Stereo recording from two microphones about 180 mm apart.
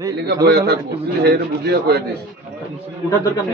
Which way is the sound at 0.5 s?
65° right (ahead or behind).